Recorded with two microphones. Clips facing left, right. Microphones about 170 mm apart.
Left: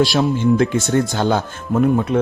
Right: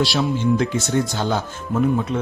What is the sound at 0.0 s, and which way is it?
Speech, 50° left (ahead or behind).